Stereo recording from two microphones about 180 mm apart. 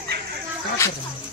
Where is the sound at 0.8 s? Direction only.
15° left (ahead or behind).